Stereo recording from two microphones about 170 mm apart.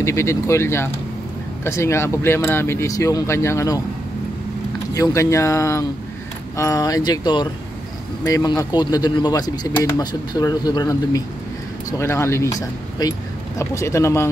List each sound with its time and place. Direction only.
0.0 s speech: 15° left (ahead or behind)
4.9 s speech: 20° left (ahead or behind)